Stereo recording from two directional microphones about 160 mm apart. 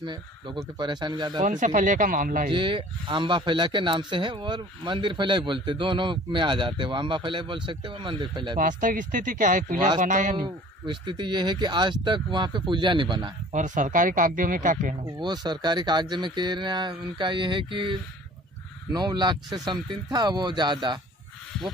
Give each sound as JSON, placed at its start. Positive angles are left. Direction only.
{"t": 0.0, "sound": "speech", "side_deg": -30}
{"t": 1.4, "sound": "speech", "side_deg": -50}
{"t": 2.5, "sound": "speech", "side_deg": -30}
{"t": 8.5, "sound": "a man's voice", "side_deg": -55}
{"t": 10.3, "sound": "speech", "side_deg": -30}
{"t": 13.5, "sound": "speech", "side_deg": -50}
{"t": 15.0, "sound": "speech", "side_deg": -25}
{"t": 18.9, "sound": "speech", "side_deg": -25}